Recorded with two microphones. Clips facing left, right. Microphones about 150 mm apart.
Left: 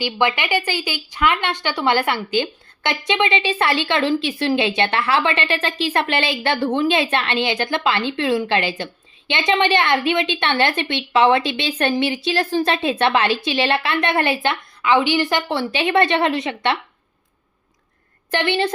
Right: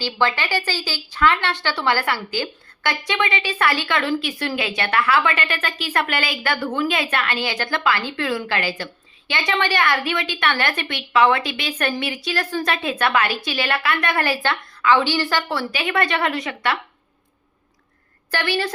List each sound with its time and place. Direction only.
0.0 s a woman's voice: 15° left (ahead or behind)
18.3 s a woman's voice: 20° left (ahead or behind)